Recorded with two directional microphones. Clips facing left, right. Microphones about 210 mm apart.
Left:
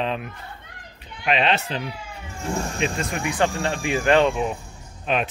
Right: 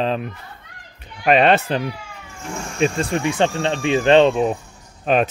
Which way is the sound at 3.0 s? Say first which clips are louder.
Right 4 dB; 30° right (ahead or behind).